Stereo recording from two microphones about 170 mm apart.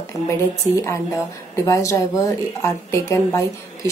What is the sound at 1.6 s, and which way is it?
A woman's voice, 15° left (ahead or behind).